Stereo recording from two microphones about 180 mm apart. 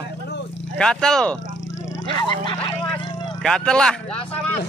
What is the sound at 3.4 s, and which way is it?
Speech, 5° left (ahead or behind).